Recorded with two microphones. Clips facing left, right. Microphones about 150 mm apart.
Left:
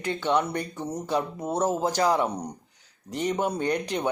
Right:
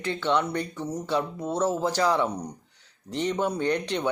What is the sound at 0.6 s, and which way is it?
Speech, 15° left (ahead or behind).